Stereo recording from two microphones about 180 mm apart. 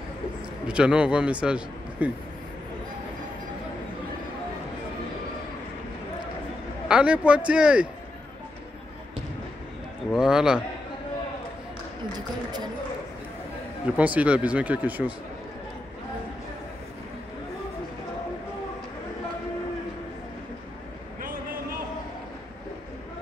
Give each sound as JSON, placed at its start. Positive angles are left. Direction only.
{"t": 0.7, "sound": "a man's voice", "side_deg": -5}
{"t": 6.9, "sound": "a man's voice", "side_deg": -5}
{"t": 10.1, "sound": "a man's voice", "side_deg": -5}
{"t": 13.9, "sound": "speech", "side_deg": -10}
{"t": 21.2, "sound": "a sound", "side_deg": -50}